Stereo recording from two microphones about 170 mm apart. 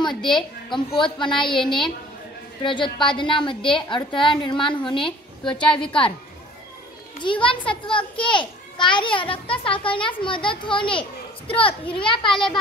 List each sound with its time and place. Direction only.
0.0 s a woman's voice: 25° left (ahead or behind)
2.6 s a child's voice: 30° left (ahead or behind)
5.5 s a woman's voice: 5° left (ahead or behind)
5.9 s a woman's voice: 30° left (ahead or behind)
7.2 s a child's voice: 30° left (ahead or behind)